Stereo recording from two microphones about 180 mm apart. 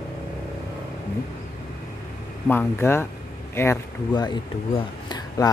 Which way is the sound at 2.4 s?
10° left (ahead or behind).